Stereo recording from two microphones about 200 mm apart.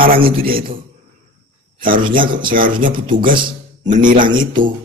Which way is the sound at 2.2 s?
25° right (ahead or behind).